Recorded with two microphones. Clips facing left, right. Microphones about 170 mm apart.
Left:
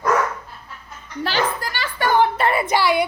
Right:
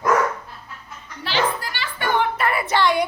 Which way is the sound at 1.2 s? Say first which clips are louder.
Left 1 dB; 45° left (ahead or behind).